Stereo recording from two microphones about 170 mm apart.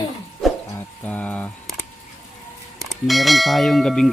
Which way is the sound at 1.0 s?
10° left (ahead or behind).